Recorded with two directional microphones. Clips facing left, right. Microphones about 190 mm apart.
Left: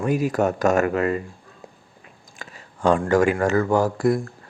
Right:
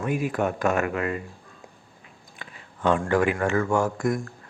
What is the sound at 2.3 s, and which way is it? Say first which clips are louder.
Speech: left 3 dB; 40° left (ahead or behind).